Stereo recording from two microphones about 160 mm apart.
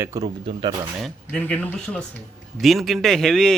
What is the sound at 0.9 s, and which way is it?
Speech, 5° left (ahead or behind).